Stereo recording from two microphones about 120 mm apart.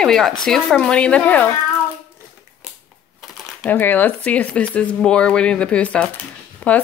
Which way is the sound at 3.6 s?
15° left (ahead or behind).